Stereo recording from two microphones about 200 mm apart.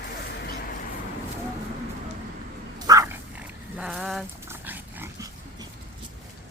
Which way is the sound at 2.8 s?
15° right (ahead or behind).